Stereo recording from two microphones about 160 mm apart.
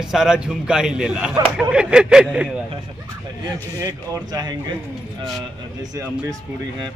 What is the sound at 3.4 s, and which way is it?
A man's voice, 20° right (ahead or behind).